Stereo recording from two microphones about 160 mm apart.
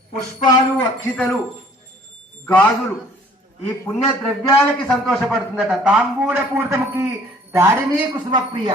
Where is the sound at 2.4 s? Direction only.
10° left (ahead or behind).